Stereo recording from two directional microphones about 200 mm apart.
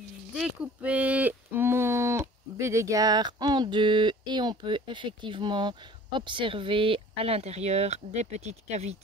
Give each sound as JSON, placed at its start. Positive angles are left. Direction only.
{"t": 0.3, "sound": "speech", "side_deg": -5}